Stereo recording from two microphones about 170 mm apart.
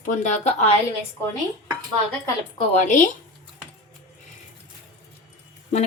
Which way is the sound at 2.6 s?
50° left (ahead or behind).